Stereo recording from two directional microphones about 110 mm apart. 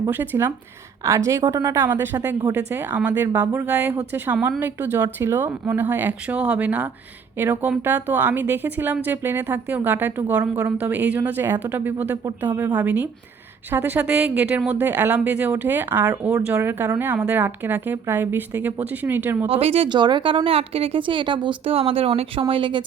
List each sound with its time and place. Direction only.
0.1 s a woman's voice: 20° right (ahead or behind)
19.5 s speech: 60° right (ahead or behind)
19.9 s a woman's voice: 45° right (ahead or behind)